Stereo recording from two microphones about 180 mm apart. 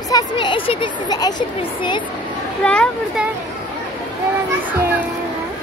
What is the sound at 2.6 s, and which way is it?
Speech, 5° left (ahead or behind).